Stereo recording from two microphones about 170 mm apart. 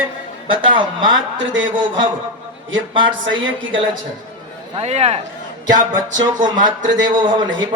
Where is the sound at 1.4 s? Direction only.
90° right.